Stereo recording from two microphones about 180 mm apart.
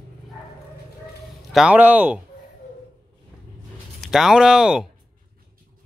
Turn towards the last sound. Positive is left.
turn(degrees=-5)  # may be behind; listen again after turning